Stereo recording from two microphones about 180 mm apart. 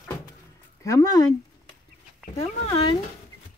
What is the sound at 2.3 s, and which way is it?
Speech, 30° left (ahead or behind).